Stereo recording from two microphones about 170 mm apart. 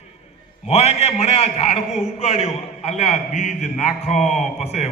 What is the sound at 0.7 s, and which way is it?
A man's voice, 40° left (ahead or behind).